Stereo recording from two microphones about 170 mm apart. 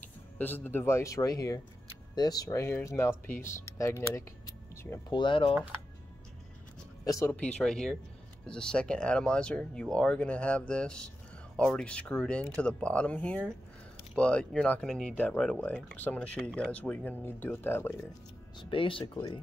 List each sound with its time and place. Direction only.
0.4 s speech: 10° left (ahead or behind)
5.1 s speech: 30° left (ahead or behind)
7.1 s speech: 15° left (ahead or behind)
18.6 s speech: 30° left (ahead or behind)